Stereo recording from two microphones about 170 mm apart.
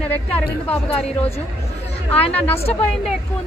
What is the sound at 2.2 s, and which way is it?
Speech, 35° left (ahead or behind).